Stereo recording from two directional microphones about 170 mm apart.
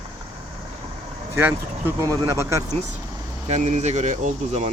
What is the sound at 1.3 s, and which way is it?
Speech, 15° right (ahead or behind).